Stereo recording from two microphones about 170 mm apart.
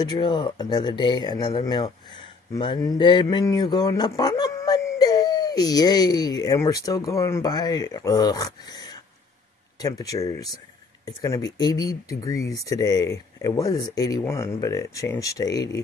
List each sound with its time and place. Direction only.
0.0 s speech: 25° left (ahead or behind)